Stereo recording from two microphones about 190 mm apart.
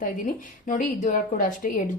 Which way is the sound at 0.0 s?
45° left (ahead or behind).